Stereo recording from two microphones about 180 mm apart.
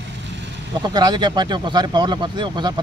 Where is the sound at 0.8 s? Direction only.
25° right (ahead or behind).